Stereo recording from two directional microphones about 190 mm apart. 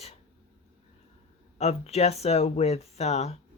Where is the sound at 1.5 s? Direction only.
35° left (ahead or behind).